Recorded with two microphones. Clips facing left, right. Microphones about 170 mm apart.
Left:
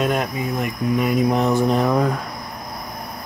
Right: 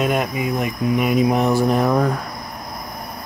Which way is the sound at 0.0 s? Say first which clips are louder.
Right 1 dB; 5° right (ahead or behind).